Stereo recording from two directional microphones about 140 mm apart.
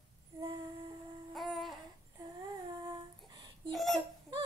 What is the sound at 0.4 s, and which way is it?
Humming, 35° right (ahead or behind).